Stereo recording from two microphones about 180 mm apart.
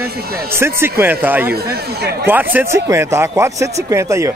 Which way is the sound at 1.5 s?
60° right (ahead or behind).